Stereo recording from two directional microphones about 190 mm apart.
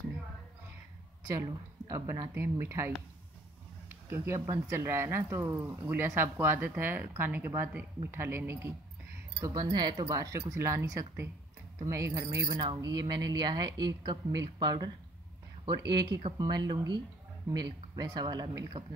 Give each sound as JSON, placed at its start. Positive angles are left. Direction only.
{"t": 1.9, "sound": "speech", "side_deg": -15}
{"t": 3.9, "sound": "speech", "side_deg": -15}
{"t": 15.9, "sound": "speech", "side_deg": -20}